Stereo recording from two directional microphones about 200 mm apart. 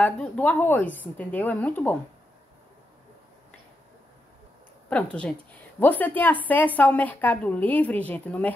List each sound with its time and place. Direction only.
0.0 s a woman's voice: 5° left (ahead or behind)
4.8 s a woman's voice: 5° left (ahead or behind)